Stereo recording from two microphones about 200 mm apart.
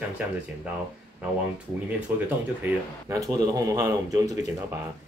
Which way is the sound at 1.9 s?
10° right (ahead or behind).